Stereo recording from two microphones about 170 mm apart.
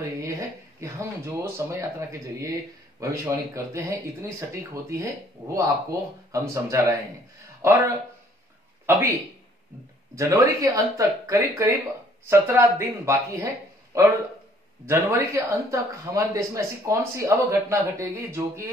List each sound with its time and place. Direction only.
0.7 s speech: 15° right (ahead or behind)
8.8 s speech: 15° right (ahead or behind)
10.1 s speech: 15° right (ahead or behind)